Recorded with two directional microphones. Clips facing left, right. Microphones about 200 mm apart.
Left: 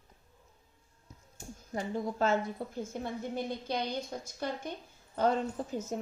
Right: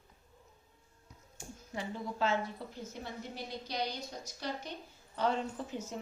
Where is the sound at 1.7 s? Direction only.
45° left (ahead or behind).